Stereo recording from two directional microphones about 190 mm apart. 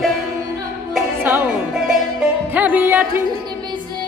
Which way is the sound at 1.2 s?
10° right (ahead or behind).